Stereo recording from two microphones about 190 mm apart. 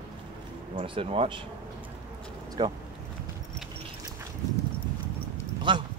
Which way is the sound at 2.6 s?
20° right (ahead or behind).